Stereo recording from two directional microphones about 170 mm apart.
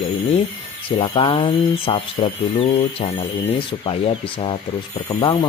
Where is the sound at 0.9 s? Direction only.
30° left (ahead or behind).